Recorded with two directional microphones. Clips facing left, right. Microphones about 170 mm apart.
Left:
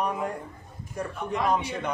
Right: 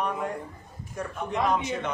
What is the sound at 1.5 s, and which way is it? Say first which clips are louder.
Speech: even; 10° left (ahead or behind).